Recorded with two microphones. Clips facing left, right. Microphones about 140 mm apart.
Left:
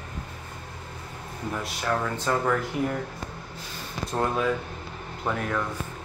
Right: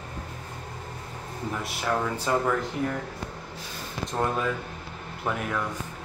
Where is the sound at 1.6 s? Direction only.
10° right (ahead or behind).